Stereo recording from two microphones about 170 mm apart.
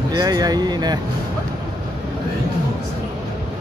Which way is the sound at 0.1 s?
25° right (ahead or behind).